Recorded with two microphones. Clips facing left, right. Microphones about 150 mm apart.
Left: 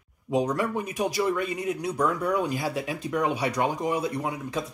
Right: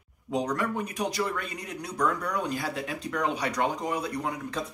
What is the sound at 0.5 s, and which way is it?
Speech, 15° left (ahead or behind).